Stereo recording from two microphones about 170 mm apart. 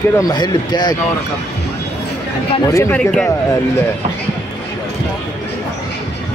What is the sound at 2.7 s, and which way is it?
Speech, 15° left (ahead or behind).